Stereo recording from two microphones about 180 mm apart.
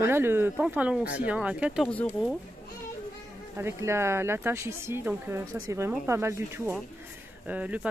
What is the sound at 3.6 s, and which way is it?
Speech, 15° right (ahead or behind).